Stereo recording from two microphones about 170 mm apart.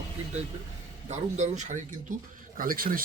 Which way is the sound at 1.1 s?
45° right (ahead or behind).